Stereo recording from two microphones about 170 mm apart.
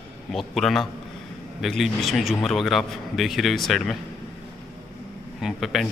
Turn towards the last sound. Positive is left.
turn(degrees=0)  # may be behind; listen again after turning